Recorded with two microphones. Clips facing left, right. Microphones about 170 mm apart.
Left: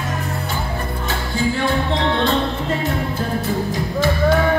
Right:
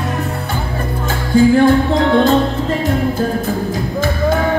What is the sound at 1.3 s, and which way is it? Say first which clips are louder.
Music: right 11 dB; 45° right (ahead or behind).